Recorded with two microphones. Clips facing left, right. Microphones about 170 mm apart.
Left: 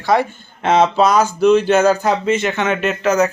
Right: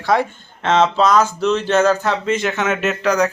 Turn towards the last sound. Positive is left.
turn(degrees=5)  # may be behind; listen again after turning